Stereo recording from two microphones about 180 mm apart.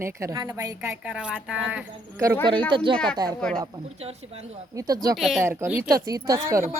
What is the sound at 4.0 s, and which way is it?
Speech, 35° right (ahead or behind).